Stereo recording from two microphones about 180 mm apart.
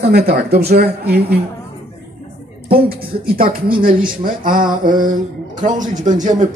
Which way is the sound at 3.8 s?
50° right (ahead or behind).